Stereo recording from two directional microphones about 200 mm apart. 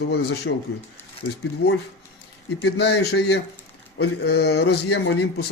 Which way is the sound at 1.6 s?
90° left.